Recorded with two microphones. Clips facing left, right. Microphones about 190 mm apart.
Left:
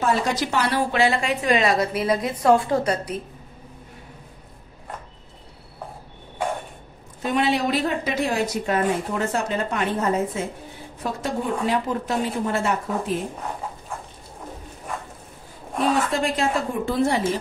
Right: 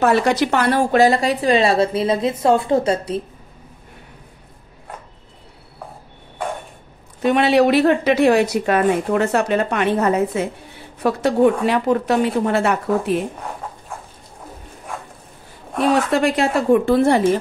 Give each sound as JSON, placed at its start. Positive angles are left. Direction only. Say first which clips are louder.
{"t": 0.0, "sound": "a woman's voice", "louder": "right 6 dB", "side_deg": -65}
{"t": 7.2, "sound": "a woman's voice", "louder": "right 8 dB", "side_deg": -70}
{"t": 15.9, "sound": "a woman's voice", "louder": "right 6 dB", "side_deg": -70}